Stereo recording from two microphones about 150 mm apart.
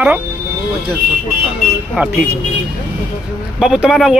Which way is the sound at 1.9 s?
5° right (ahead or behind).